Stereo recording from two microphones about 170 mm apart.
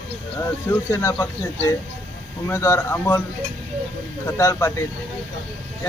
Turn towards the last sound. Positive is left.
turn(degrees=15)  # may be behind; listen again after turning